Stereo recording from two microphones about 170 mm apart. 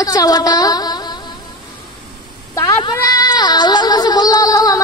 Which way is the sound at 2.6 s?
20° left (ahead or behind).